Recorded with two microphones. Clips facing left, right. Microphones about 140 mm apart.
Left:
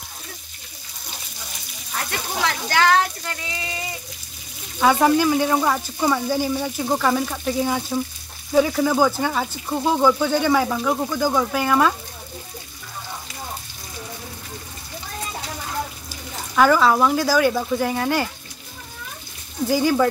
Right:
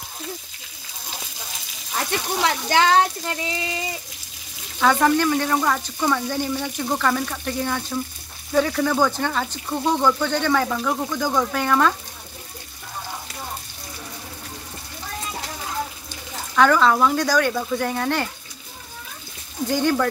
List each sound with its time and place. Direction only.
2.0 s speech: 25° right (ahead or behind)
4.7 s speech: 10° left (ahead or behind)
16.1 s speech: 5° left (ahead or behind)
19.7 s speech: 5° left (ahead or behind)